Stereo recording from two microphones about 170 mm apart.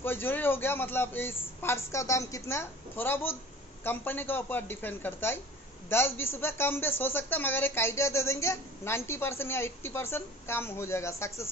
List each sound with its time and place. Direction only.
0.0 s a man's voice: 10° left (ahead or behind)